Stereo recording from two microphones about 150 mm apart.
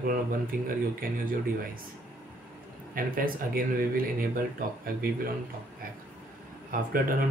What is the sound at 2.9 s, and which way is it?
Speech, 75° right (ahead or behind).